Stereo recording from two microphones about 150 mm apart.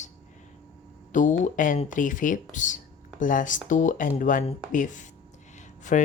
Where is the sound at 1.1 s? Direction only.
60° left (ahead or behind).